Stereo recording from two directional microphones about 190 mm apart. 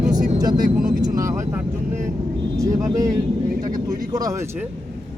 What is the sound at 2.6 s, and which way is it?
Speech, 15° right (ahead or behind).